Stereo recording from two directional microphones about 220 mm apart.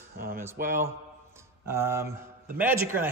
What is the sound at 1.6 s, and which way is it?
A man's voice, 10° right (ahead or behind).